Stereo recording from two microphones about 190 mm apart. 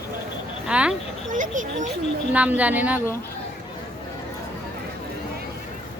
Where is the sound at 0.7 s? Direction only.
5° right (ahead or behind).